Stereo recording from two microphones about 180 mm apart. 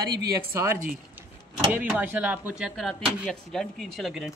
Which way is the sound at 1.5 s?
5° right (ahead or behind).